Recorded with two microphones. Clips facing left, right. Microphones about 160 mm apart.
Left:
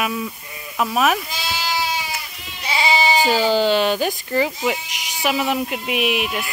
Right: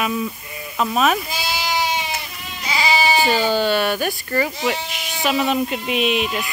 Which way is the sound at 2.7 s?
25° left (ahead or behind).